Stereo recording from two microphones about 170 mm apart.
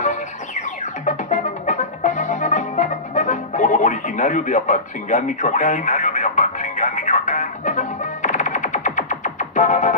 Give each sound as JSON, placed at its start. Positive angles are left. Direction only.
{"t": 0.0, "sound": "music", "side_deg": 50}